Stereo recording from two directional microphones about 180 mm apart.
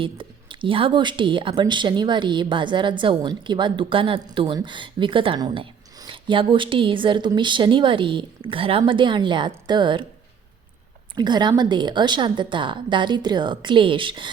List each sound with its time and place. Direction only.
0.0 s a woman's voice: 30° right (ahead or behind)
11.1 s a woman's voice: 25° right (ahead or behind)